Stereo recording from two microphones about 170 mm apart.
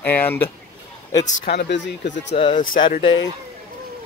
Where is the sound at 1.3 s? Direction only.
85° left.